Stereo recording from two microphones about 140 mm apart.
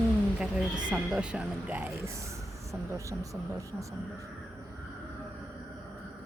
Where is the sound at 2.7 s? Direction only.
20° right (ahead or behind).